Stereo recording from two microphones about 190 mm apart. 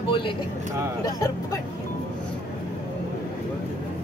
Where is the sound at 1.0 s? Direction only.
20° left (ahead or behind).